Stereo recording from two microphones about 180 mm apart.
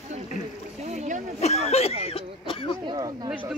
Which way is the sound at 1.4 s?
35° left (ahead or behind).